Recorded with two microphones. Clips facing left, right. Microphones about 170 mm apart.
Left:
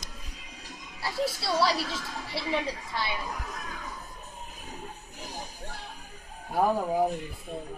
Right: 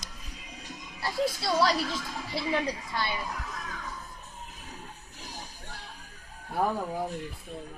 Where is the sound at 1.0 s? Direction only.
5° left (ahead or behind).